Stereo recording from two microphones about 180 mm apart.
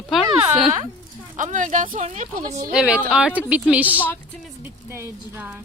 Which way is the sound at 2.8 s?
5° right (ahead or behind).